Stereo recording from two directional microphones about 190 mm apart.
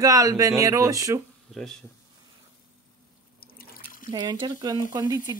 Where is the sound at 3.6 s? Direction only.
50° left (ahead or behind).